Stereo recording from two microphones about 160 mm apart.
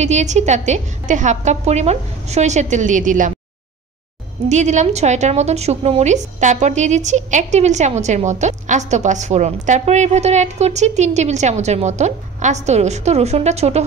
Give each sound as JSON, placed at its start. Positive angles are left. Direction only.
{"t": 0.0, "sound": "a woman's voice", "side_deg": -45}
{"t": 4.5, "sound": "a woman's voice", "side_deg": -45}